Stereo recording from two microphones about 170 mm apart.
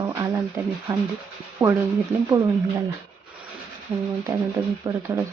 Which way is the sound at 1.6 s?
10° right (ahead or behind).